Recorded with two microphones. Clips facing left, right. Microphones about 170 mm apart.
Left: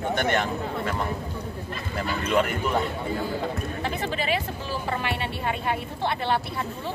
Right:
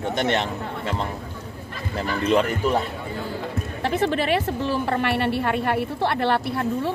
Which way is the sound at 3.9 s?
65° right (ahead or behind).